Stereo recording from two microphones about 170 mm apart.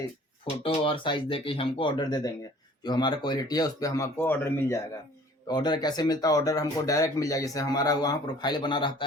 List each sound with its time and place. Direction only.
0.6 s speech: 30° left (ahead or behind); by 4.8 s 10° left (ahead or behind)
5.5 s speech: 25° left (ahead or behind)